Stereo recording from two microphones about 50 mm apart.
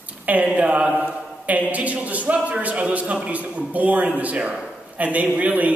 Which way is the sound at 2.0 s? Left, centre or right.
Right.